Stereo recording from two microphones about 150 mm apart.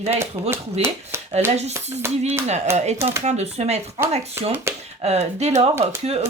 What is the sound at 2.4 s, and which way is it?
Speech, 45° right (ahead or behind).